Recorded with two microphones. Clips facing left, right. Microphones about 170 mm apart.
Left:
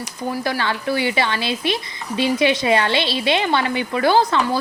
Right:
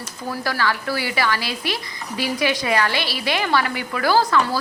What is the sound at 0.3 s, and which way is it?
Stir, 20° left (ahead or behind).